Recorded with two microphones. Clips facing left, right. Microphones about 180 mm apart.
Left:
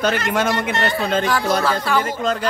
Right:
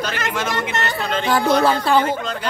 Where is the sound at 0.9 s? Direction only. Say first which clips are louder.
Left 3 dB; 50° left (ahead or behind).